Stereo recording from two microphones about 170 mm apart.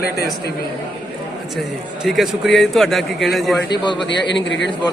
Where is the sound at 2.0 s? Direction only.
Centre (ahead or behind).